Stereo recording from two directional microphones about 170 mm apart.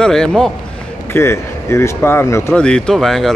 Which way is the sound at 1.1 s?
15° left (ahead or behind).